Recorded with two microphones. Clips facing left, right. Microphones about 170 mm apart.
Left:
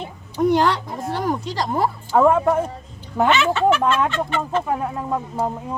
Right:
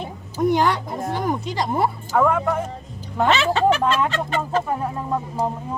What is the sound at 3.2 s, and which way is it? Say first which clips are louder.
Speech: even; 35° right (ahead or behind).